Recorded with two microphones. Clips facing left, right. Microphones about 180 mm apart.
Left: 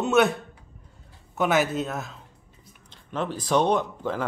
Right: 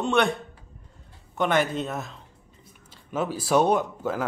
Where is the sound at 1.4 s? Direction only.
5° left (ahead or behind).